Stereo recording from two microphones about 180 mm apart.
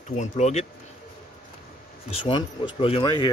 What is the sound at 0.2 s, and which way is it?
Speech, 40° left (ahead or behind).